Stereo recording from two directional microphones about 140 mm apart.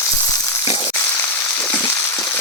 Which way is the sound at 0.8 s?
15° left (ahead or behind).